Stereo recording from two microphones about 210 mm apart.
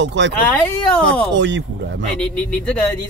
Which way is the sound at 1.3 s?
55° right (ahead or behind).